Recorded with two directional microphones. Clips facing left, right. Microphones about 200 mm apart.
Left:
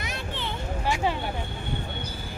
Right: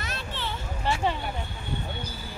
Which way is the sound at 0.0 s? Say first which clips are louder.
Left 1 dB; 15° left (ahead or behind).